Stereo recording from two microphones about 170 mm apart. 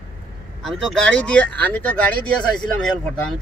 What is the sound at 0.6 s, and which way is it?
Speech, centre (ahead or behind).